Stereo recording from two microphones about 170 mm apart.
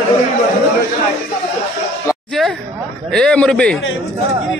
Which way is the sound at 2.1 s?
15° left (ahead or behind).